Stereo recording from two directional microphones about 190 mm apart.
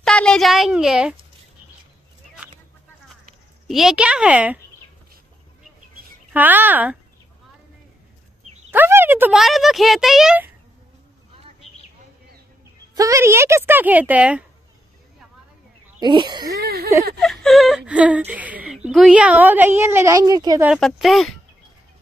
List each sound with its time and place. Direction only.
0.0 s a woman's voice: 5° left (ahead or behind)
3.6 s speech: centre (ahead or behind)
6.3 s speech: 10° right (ahead or behind)
8.7 s speech: 10° right (ahead or behind)
12.9 s speech: 15° right (ahead or behind)
16.0 s speech: 25° right (ahead or behind)
16.6 s whimper: 55° right (ahead or behind)
17.2 s speech: centre (ahead or behind); by 20.6 s 20° right (ahead or behind)
20.6 s speech: centre (ahead or behind)